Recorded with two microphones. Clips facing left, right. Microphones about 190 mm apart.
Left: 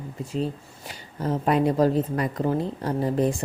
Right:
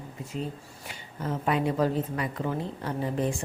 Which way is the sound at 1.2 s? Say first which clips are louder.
Left 5 dB; 40° left (ahead or behind).